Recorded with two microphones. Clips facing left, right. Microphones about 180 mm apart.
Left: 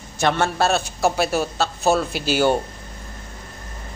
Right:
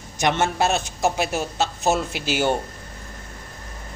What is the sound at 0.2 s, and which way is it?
A man's voice, 20° right (ahead or behind).